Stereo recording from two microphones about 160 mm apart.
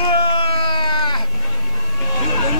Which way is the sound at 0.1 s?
35° left (ahead or behind).